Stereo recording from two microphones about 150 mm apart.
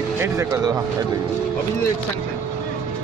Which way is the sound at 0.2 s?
20° right (ahead or behind).